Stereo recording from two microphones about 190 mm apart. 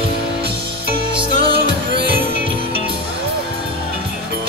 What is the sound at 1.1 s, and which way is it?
Music, 25° right (ahead or behind).